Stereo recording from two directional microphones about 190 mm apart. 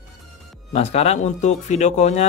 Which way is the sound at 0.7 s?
35° left (ahead or behind).